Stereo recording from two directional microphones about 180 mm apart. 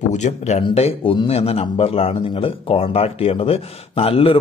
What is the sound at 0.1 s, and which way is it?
A man's voice, 40° left (ahead or behind).